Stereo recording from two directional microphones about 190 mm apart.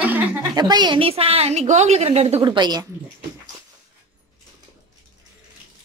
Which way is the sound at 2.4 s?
20° right (ahead or behind).